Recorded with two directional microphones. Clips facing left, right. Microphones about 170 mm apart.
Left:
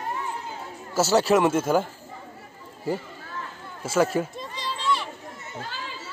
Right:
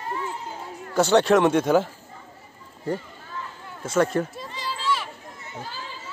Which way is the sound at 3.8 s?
5° left (ahead or behind).